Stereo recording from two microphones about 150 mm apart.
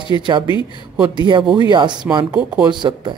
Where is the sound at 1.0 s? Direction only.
30° right (ahead or behind).